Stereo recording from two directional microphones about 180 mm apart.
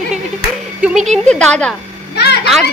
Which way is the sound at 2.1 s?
65° left (ahead or behind).